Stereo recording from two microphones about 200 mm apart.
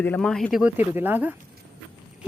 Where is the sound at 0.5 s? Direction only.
5° right (ahead or behind).